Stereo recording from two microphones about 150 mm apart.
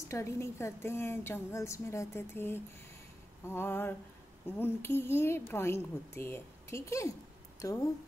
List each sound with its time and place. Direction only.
0.1 s a woman's voice: 20° left (ahead or behind)